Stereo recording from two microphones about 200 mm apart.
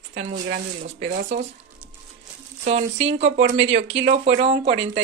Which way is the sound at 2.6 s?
35° right (ahead or behind).